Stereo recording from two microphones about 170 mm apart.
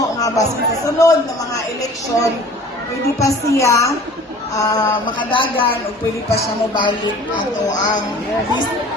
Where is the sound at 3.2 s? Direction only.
20° left (ahead or behind).